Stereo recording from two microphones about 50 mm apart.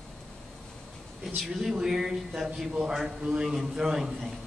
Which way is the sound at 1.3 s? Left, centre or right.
Centre.